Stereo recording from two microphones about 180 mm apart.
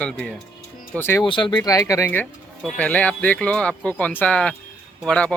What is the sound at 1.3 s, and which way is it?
Speech, 30° left (ahead or behind).